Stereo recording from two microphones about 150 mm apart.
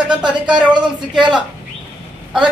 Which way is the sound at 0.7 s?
30° right (ahead or behind).